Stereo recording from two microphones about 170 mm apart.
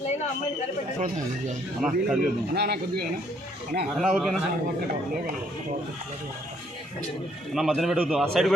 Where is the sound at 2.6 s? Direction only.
70° right (ahead or behind).